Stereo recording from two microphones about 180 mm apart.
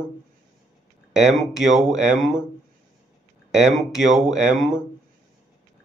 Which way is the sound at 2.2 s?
5° right (ahead or behind).